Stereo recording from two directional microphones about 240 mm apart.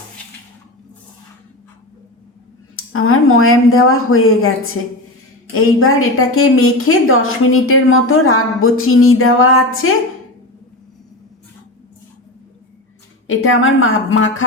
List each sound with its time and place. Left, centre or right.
2.7 s a woman's voice: left
13.2 s a woman's voice: left